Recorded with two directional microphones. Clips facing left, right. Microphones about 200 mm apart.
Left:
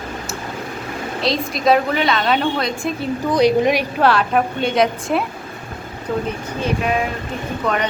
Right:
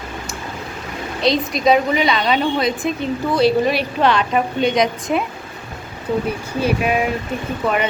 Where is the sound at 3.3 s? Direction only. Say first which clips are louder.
Left 1 dB; 15° left (ahead or behind).